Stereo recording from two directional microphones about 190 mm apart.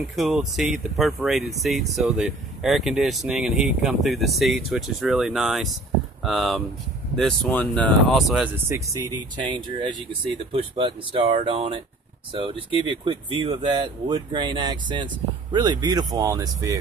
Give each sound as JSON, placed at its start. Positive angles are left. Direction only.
{"t": 0.1, "sound": "speech", "side_deg": 0}
{"t": 8.5, "sound": "speech", "side_deg": -15}
{"t": 9.4, "sound": "speech", "side_deg": -25}